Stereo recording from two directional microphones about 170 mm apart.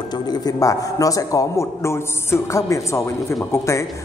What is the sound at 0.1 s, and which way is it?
A man's voice, 25° left (ahead or behind).